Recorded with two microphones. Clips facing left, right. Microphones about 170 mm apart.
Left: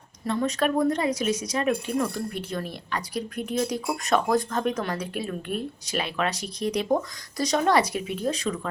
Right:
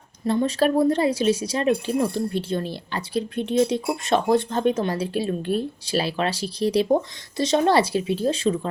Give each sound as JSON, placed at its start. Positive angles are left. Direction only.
{"t": 0.3, "sound": "speech", "side_deg": -30}